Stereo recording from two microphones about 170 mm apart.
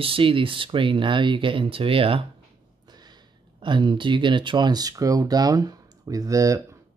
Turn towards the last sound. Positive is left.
turn(degrees=-15)  # may be behind; listen again after turning